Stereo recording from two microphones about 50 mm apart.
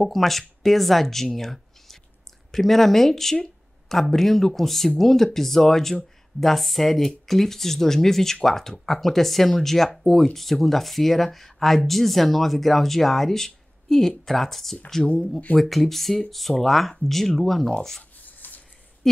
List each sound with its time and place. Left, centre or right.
0.0 s speech: centre
18.2 s rub: left